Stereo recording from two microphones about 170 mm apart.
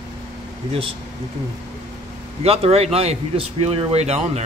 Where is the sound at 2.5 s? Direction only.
40° right (ahead or behind).